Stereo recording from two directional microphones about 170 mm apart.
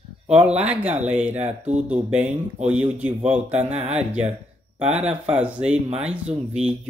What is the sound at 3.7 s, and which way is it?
Speech, 40° right (ahead or behind).